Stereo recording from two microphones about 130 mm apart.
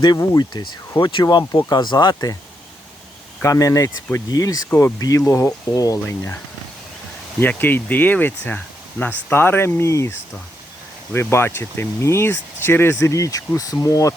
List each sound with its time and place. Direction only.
0.2 s speech: 30° left (ahead or behind)
3.4 s speech: 25° left (ahead or behind)